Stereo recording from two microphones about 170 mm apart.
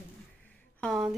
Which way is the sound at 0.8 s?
Centre (ahead or behind).